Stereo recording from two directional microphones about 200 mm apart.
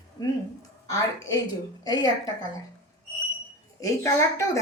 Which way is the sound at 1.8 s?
20° left (ahead or behind).